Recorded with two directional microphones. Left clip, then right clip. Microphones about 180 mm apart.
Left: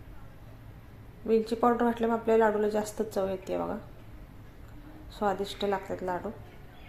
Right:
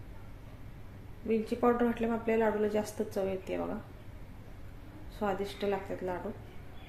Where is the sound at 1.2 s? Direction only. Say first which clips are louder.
Left 4 dB; 20° left (ahead or behind).